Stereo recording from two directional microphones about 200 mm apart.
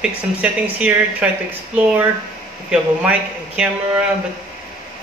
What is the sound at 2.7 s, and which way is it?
Speech, 5° right (ahead or behind).